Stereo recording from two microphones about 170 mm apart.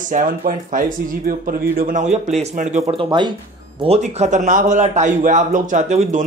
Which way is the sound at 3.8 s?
40° right (ahead or behind).